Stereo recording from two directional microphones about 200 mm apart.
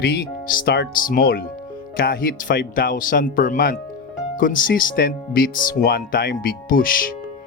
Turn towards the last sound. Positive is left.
turn(degrees=45)  # may be behind; listen again after turning